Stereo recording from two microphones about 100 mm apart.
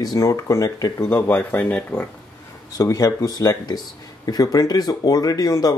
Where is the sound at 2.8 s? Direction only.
35° left (ahead or behind).